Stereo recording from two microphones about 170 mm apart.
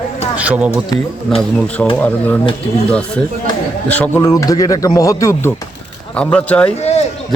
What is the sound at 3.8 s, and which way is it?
Speech, 10° left (ahead or behind).